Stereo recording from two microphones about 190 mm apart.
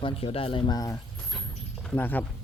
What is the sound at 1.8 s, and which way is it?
Speech, 5° left (ahead or behind).